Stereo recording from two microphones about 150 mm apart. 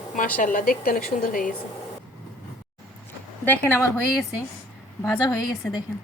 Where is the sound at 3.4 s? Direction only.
15° left (ahead or behind).